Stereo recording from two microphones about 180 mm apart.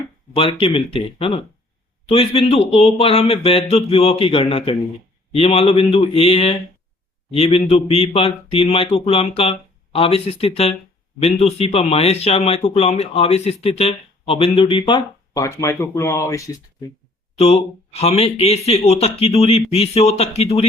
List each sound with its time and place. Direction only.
0.3 s speech: 30° left (ahead or behind)
15.3 s speech: 15° left (ahead or behind)
17.3 s speech: 35° left (ahead or behind)